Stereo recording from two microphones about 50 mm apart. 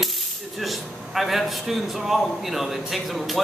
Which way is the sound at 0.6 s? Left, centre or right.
Centre.